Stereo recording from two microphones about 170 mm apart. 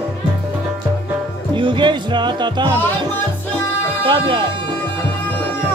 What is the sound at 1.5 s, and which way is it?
Music, 30° right (ahead or behind).